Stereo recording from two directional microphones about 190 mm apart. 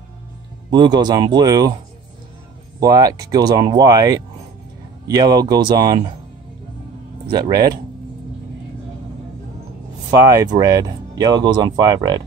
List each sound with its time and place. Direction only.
0.7 s speech: 20° right (ahead or behind)
2.8 s speech: 20° right (ahead or behind)
7.2 s speech: 20° right (ahead or behind)
10.1 s speech: 15° right (ahead or behind)